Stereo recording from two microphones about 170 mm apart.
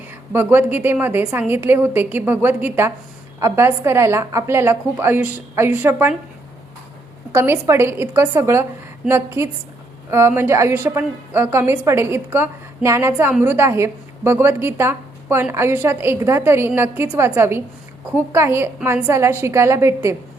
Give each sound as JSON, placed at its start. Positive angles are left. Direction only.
{"t": 0.1, "sound": "a woman's voice", "side_deg": -10}
{"t": 7.3, "sound": "a woman's voice", "side_deg": -15}